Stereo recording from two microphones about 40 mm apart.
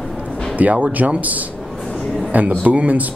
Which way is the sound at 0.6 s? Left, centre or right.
Right.